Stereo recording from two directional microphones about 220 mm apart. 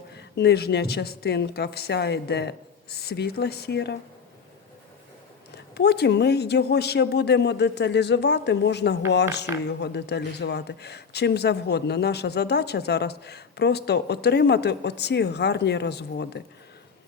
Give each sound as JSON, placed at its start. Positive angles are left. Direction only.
{"t": 0.1, "sound": "speech", "side_deg": 50}
{"t": 5.7, "sound": "speech", "side_deg": 50}